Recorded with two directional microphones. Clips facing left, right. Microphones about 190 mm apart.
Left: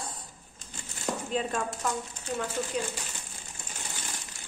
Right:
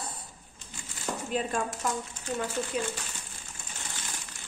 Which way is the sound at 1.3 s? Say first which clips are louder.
Right 1 dB; 5° right (ahead or behind).